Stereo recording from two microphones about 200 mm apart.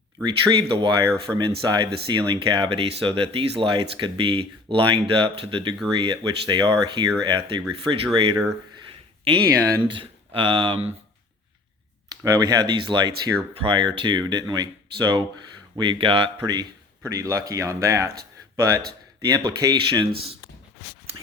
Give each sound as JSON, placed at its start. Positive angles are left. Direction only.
{"t": 0.2, "sound": "speech", "side_deg": -20}
{"t": 12.0, "sound": "speech", "side_deg": -20}